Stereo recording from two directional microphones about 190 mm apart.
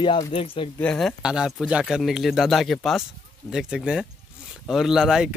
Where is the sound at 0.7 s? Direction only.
5° left (ahead or behind).